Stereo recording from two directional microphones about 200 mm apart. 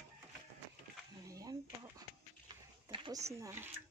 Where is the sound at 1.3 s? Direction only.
20° right (ahead or behind).